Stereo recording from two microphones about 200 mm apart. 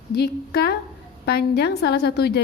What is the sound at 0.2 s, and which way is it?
A woman's voice, 50° left (ahead or behind).